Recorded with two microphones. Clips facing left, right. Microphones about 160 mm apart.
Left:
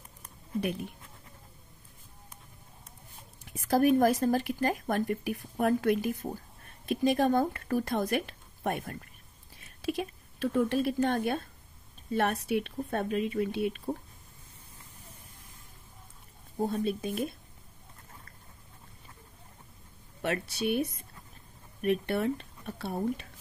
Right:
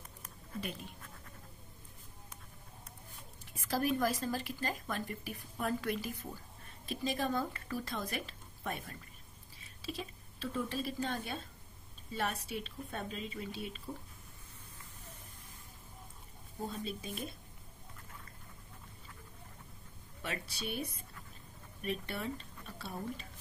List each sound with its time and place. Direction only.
0.6 s speech: 60° left (ahead or behind)
3.5 s speech: 55° left (ahead or behind)
16.6 s speech: 60° left (ahead or behind)
20.2 s speech: 65° left (ahead or behind)
21.8 s speech: 60° left (ahead or behind)